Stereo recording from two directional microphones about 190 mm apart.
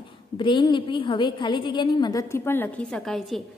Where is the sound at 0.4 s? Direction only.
25° left (ahead or behind).